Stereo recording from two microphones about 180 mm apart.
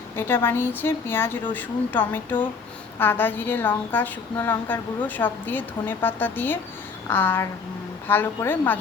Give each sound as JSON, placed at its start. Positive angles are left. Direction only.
{"t": 0.2, "sound": "a woman's voice", "side_deg": 10}